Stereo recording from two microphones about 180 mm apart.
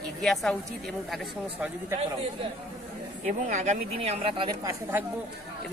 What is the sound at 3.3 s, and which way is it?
Speech, 40° right (ahead or behind).